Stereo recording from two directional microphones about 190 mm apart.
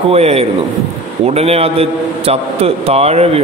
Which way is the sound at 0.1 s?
35° right (ahead or behind).